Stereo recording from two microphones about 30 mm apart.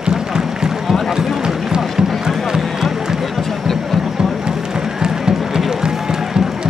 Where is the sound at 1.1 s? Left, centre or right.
Right.